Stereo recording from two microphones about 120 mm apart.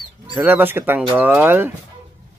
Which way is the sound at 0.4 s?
15° right (ahead or behind).